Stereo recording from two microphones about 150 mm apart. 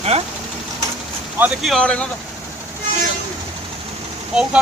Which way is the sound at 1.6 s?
5° left (ahead or behind).